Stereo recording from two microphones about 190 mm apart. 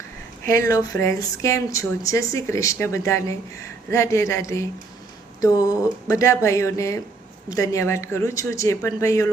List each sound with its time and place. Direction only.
0.4 s speech: 15° left (ahead or behind)